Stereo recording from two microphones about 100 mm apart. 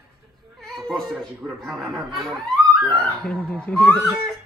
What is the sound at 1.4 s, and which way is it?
Speech, centre (ahead or behind).